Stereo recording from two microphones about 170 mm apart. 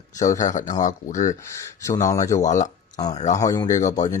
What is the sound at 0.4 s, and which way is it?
Speech, 50° left (ahead or behind).